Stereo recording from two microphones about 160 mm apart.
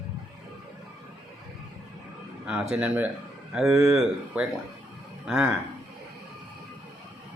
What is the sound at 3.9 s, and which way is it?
Speech, 5° right (ahead or behind).